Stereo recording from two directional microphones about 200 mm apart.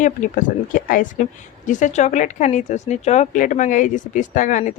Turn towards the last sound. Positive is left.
turn(degrees=40)  # may be behind; listen again after turning